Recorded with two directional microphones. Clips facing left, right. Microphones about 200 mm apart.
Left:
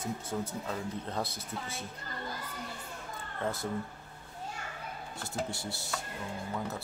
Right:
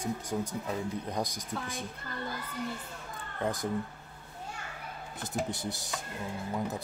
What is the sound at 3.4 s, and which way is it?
Speech, 15° right (ahead or behind).